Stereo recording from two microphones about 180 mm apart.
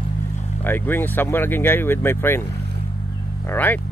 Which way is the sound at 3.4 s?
10° left (ahead or behind).